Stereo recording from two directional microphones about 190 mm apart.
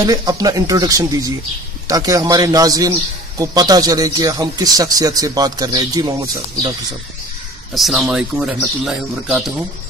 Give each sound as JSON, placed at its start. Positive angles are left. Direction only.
{"t": 0.0, "sound": "speech", "side_deg": -20}
{"t": 7.7, "sound": "speech", "side_deg": 0}